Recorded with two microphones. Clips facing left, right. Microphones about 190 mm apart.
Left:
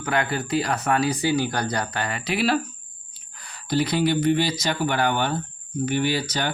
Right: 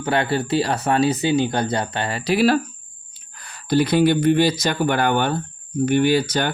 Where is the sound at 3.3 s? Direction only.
55° right (ahead or behind).